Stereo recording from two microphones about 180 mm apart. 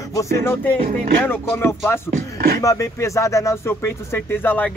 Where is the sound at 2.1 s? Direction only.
60° right (ahead or behind).